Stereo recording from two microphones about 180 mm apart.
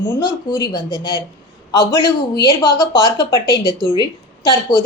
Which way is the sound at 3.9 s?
25° left (ahead or behind).